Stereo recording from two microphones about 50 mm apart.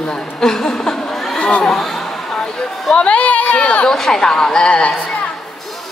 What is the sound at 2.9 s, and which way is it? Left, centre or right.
Speech, left.